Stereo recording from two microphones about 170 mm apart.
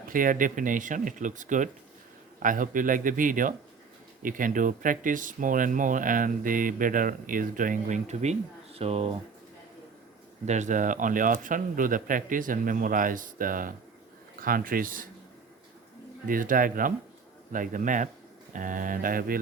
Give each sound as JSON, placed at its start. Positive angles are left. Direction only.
{"t": 0.1, "sound": "speech", "side_deg": -55}
{"t": 10.4, "sound": "speech", "side_deg": -45}
{"t": 16.2, "sound": "speech", "side_deg": -55}